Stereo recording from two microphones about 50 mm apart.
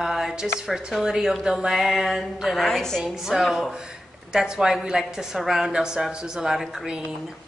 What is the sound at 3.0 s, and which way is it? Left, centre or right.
Speech, centre.